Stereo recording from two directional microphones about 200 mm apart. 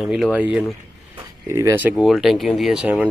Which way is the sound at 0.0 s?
5° right (ahead or behind).